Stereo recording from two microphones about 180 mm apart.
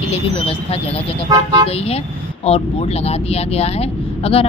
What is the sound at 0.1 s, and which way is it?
Speech, 35° left (ahead or behind).